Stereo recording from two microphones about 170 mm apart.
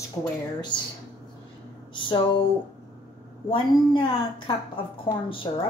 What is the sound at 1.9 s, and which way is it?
Speech, 25° left (ahead or behind).